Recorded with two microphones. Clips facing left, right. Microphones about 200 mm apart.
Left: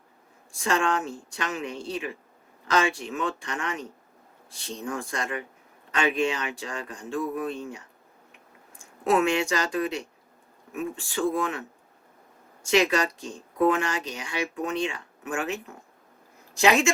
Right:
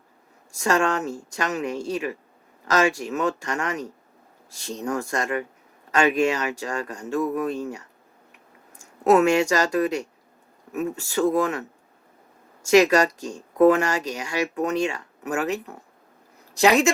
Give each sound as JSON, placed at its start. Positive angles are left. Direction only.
{"t": 0.5, "sound": "speech", "side_deg": -40}
{"t": 12.6, "sound": "speech", "side_deg": -40}